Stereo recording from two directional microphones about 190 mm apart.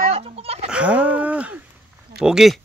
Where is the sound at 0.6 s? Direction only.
5° right (ahead or behind).